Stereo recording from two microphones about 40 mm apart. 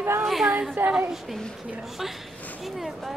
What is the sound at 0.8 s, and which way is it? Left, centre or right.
Speech, right.